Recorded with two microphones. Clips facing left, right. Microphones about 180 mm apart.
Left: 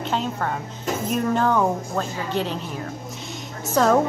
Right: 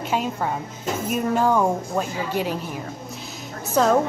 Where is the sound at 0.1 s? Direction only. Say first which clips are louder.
Right 2 dB; 10° right (ahead or behind).